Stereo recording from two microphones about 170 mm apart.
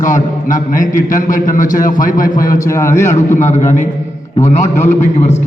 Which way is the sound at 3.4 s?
45° left (ahead or behind).